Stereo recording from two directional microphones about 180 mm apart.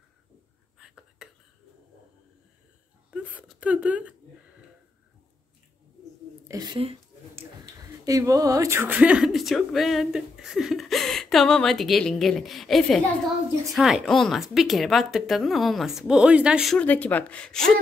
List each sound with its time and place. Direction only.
0.7 s whispering: 5° right (ahead or behind)
3.1 s wail: 10° right (ahead or behind)
6.4 s a woman's voice: 20° right (ahead or behind)
8.0 s speech: 20° right (ahead or behind)
16.7 s speech: 10° left (ahead or behind)